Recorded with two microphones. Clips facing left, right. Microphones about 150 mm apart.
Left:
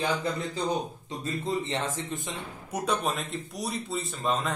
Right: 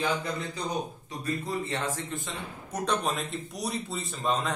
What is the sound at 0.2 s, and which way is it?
A man's voice, 25° left (ahead or behind).